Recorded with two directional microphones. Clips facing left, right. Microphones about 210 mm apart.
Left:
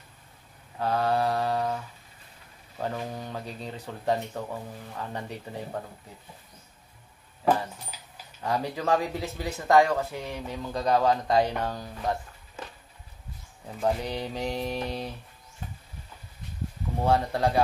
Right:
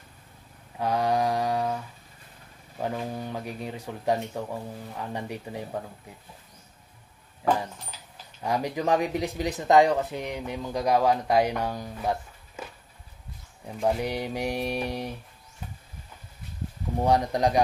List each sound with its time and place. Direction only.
0.7 s speech: 15° right (ahead or behind)
2.8 s speech: 10° right (ahead or behind)
8.4 s speech: 10° right (ahead or behind)
13.8 s speech: 15° right (ahead or behind)
17.0 s speech: 15° right (ahead or behind)